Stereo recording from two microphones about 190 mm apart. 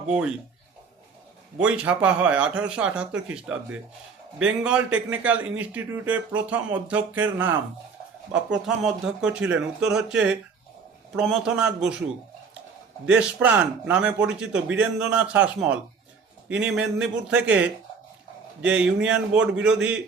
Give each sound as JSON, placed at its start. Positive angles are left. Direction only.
{"t": 1.5, "sound": "a man's voice", "side_deg": -5}
{"t": 13.1, "sound": "a man's voice", "side_deg": -5}